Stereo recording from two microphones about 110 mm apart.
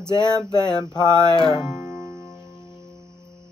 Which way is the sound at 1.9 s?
Centre (ahead or behind).